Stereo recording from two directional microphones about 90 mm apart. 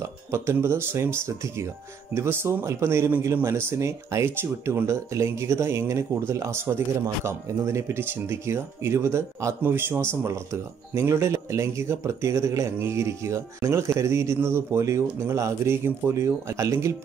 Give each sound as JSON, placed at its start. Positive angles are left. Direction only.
{"t": 0.3, "sound": "speech", "side_deg": -30}